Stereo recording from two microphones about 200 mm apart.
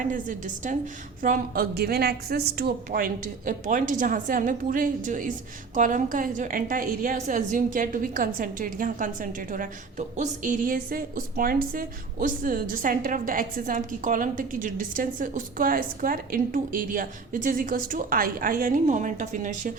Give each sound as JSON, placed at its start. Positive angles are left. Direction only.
{"t": 0.0, "sound": "a woman's voice", "side_deg": -40}